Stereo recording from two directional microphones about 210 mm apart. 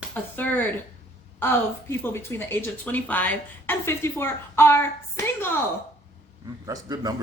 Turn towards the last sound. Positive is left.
turn(degrees=-20)  # may be behind; listen again after turning